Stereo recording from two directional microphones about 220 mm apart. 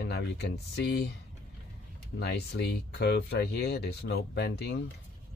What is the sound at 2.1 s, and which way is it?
Speech, 50° left (ahead or behind).